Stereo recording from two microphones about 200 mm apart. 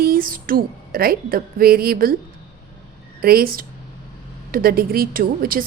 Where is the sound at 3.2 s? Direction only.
50° right (ahead or behind).